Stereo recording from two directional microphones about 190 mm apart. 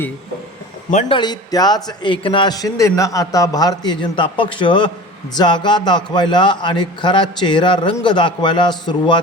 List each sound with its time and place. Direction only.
0.9 s a man's voice: 35° left (ahead or behind)